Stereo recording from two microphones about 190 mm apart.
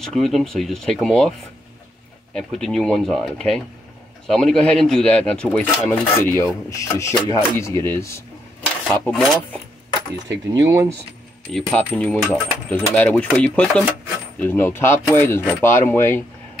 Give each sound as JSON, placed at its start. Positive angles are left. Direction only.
{"t": 0.0, "sound": "speech", "side_deg": 0}
{"t": 2.3, "sound": "speech", "side_deg": 0}
{"t": 10.5, "sound": "speech", "side_deg": -20}
{"t": 11.4, "sound": "speech", "side_deg": 5}